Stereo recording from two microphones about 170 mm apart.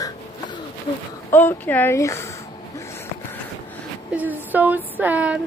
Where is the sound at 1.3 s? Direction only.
10° left (ahead or behind).